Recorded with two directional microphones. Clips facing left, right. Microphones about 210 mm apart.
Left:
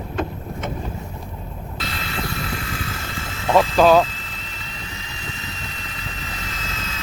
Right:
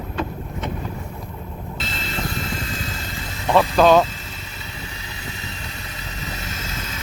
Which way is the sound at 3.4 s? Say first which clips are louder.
Even; 10° left (ahead or behind).